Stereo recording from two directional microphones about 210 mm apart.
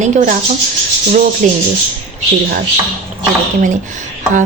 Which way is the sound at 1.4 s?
40° right (ahead or behind).